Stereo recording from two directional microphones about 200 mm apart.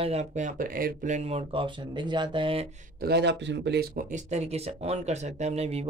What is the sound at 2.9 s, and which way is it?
Speech, 55° right (ahead or behind).